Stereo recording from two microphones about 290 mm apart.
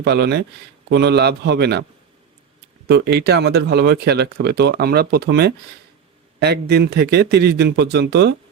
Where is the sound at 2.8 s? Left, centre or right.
Right.